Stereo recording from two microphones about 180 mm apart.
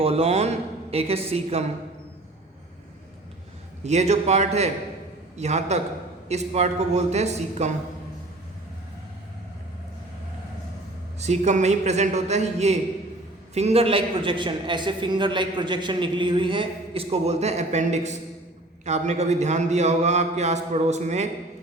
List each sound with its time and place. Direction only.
0.0 s a man's voice: 35° right (ahead or behind)
3.8 s a man's voice: 40° right (ahead or behind)
11.2 s a man's voice: 40° right (ahead or behind)